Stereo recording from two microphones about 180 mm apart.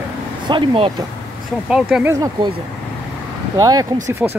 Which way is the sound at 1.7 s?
5° right (ahead or behind).